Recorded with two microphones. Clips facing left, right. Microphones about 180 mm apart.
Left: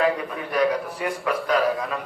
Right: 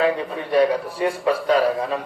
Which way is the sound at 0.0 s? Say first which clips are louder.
Right 2 dB; 30° right (ahead or behind).